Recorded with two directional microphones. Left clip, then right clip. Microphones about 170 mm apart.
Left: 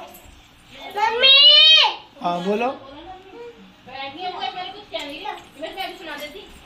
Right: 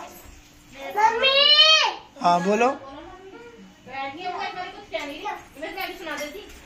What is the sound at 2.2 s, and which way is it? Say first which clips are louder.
Speech: right 5 dB; 25° right (ahead or behind).